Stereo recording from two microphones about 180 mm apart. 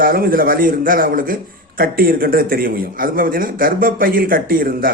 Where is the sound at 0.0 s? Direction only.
50° right (ahead or behind).